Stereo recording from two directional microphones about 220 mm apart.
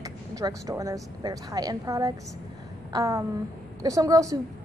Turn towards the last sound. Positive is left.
turn(degrees=-15)  # may be behind; listen again after turning